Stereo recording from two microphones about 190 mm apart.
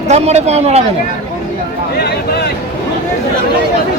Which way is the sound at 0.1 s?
35° right (ahead or behind).